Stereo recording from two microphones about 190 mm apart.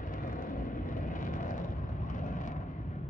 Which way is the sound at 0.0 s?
45° left (ahead or behind).